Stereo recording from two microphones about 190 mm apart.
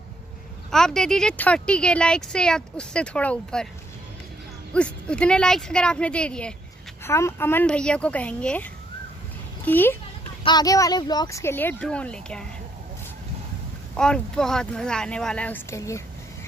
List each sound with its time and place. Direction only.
0.7 s speech: centre (ahead or behind)
4.7 s speech: 5° left (ahead or behind)
9.7 s speech: 10° left (ahead or behind)
10.4 s speech: 20° left (ahead or behind); by 12.4 s 5° left (ahead or behind)
13.9 s speech: 5° left (ahead or behind)